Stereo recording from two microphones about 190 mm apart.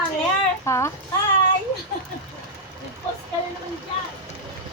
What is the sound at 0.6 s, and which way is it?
Speech, 15° left (ahead or behind).